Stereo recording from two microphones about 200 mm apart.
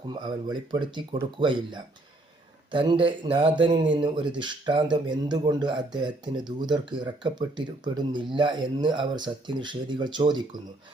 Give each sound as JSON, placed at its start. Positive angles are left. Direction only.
{"t": 0.1, "sound": "speech", "side_deg": -20}